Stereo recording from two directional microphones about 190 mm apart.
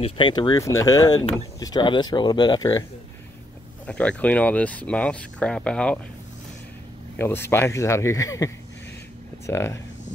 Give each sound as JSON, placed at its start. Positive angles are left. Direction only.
{"t": 0.0, "sound": "speech", "side_deg": 25}
{"t": 3.8, "sound": "speech", "side_deg": 5}
{"t": 7.2, "sound": "speech", "side_deg": 10}
{"t": 9.5, "sound": "speech", "side_deg": 15}